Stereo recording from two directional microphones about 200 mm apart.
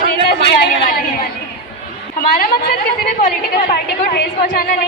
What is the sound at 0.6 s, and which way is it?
Speech, 45° left (ahead or behind).